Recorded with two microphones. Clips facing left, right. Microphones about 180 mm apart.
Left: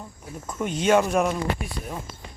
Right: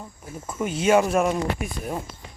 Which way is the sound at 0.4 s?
5° right (ahead or behind).